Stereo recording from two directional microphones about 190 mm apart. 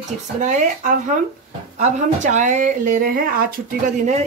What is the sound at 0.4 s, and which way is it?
Speech, 40° right (ahead or behind).